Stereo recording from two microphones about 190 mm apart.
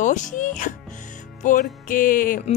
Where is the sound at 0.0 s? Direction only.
40° left (ahead or behind).